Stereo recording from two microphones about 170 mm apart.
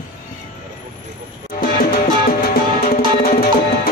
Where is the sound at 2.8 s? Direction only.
60° left (ahead or behind).